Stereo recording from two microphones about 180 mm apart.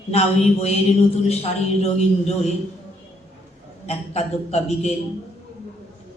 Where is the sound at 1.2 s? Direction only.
35° left (ahead or behind).